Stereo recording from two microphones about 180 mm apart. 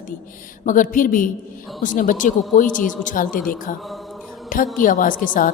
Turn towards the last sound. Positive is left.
turn(degrees=50)  # may be behind; listen again after turning